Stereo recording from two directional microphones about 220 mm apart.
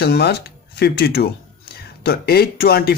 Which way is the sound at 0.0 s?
45° left (ahead or behind).